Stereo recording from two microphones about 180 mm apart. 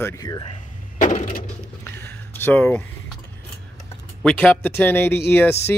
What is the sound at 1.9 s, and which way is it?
Speech, 10° left (ahead or behind).